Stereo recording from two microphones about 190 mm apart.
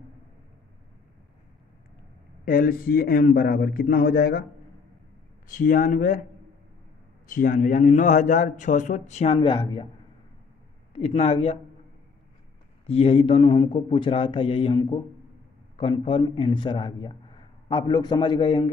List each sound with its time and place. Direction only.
2.4 s a man's voice: 50° left (ahead or behind)
5.5 s a man's voice: 45° left (ahead or behind)
7.2 s a man's voice: 40° left (ahead or behind); by 9.8 s 25° left (ahead or behind)
10.9 s a man's voice: 30° left (ahead or behind)
12.8 s a man's voice: 30° left (ahead or behind)